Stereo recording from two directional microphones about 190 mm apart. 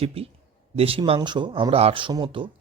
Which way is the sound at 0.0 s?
30° right (ahead or behind).